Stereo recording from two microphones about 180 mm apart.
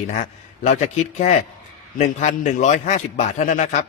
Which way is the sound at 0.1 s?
45° left (ahead or behind).